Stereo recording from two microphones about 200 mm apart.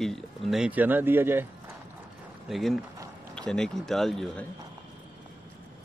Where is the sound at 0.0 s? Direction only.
Centre (ahead or behind).